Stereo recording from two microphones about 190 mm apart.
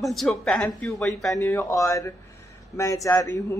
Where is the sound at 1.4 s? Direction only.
15° left (ahead or behind).